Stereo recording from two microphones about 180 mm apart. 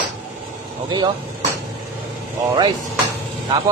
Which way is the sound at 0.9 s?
25° right (ahead or behind).